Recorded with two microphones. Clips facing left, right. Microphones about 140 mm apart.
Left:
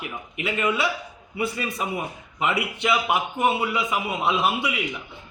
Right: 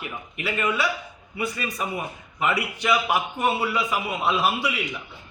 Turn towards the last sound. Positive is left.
turn(degrees=20)  # may be behind; listen again after turning